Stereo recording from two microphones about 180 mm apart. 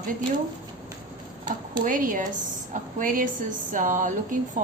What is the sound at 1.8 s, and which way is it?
A woman's voice, 50° right (ahead or behind).